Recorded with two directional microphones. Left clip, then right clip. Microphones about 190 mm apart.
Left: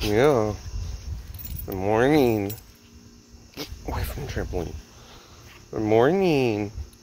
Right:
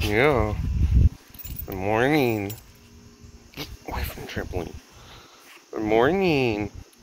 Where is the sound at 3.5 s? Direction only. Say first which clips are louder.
Even; 25° left (ahead or behind).